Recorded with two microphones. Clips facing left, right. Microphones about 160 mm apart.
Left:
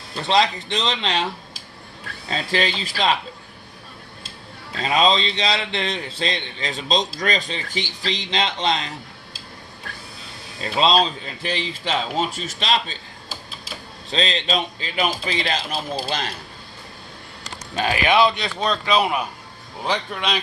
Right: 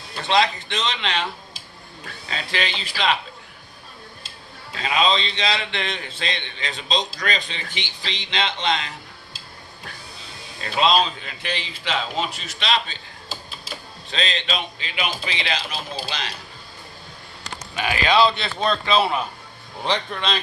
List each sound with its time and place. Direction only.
0.3 s a man's voice: 35° left (ahead or behind)
2.3 s a man's voice: 40° left (ahead or behind)
4.8 s a man's voice: 35° left (ahead or behind)
10.6 s a man's voice: 30° left (ahead or behind)
14.1 s a man's voice: 35° left (ahead or behind)
18.0 s speech: 15° left (ahead or behind)